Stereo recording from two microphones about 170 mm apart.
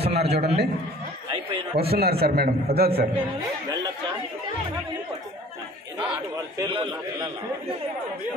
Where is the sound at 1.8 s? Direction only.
65° right (ahead or behind).